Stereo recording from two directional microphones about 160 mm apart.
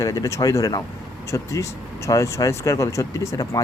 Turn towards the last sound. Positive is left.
turn(degrees=20)  # may be behind; listen again after turning